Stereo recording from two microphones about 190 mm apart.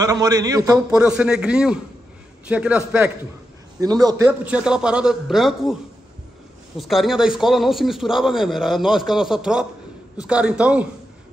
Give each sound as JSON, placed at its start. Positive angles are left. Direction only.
{"t": 0.0, "sound": "a man's voice", "side_deg": -20}
{"t": 0.9, "sound": "a man's voice", "side_deg": -5}
{"t": 3.8, "sound": "a man's voice", "side_deg": -20}
{"t": 4.3, "sound": "a man's voice", "side_deg": -5}
{"t": 6.8, "sound": "a man's voice", "side_deg": 0}